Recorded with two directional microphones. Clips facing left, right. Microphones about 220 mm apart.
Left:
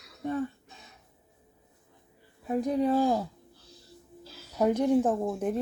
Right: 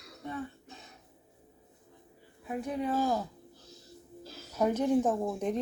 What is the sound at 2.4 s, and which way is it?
Speech, 35° left (ahead or behind).